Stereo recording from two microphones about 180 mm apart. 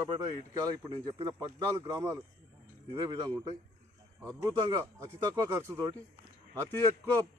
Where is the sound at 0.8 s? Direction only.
25° right (ahead or behind).